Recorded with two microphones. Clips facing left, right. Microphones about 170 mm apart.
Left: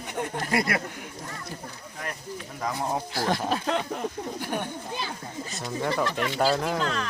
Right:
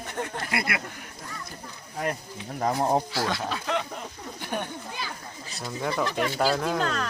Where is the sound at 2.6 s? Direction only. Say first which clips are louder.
Right 5 dB; 40° right (ahead or behind).